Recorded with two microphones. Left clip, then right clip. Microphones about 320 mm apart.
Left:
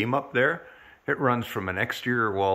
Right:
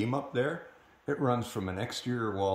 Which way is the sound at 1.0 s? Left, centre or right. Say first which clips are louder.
Left 7 dB; centre.